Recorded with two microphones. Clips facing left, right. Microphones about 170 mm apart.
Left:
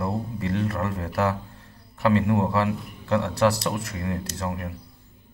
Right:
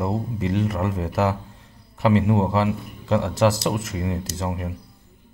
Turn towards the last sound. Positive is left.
turn(degrees=-20)  # may be behind; listen again after turning